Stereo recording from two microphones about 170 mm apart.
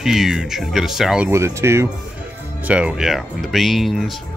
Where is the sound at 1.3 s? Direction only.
15° right (ahead or behind).